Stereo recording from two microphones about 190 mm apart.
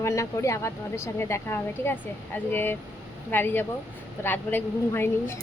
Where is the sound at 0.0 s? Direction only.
15° left (ahead or behind).